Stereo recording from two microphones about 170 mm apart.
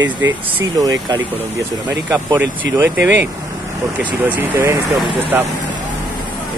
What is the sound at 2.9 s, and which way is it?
Speech, 90° right.